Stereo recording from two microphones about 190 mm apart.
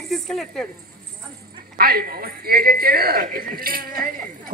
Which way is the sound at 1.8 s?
50° right (ahead or behind).